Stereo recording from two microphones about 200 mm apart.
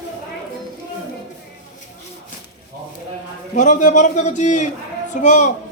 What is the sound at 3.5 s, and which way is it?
A man's voice, 40° left (ahead or behind).